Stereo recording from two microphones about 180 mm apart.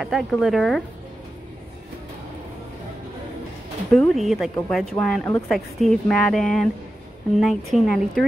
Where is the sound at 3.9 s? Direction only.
Centre (ahead or behind).